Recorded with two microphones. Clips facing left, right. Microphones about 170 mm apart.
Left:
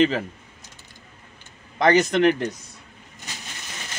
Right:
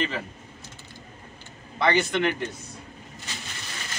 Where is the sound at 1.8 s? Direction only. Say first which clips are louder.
Left 5 dB; 40° left (ahead or behind).